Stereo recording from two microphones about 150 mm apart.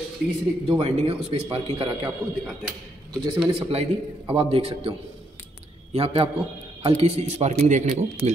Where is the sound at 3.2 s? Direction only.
30° right (ahead or behind).